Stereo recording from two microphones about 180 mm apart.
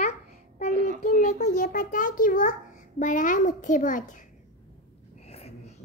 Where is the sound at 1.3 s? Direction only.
40° left (ahead or behind).